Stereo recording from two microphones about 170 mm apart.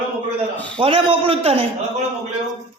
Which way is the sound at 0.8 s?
30° right (ahead or behind).